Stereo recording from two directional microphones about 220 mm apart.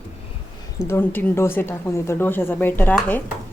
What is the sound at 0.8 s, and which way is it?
A woman's voice, 10° left (ahead or behind).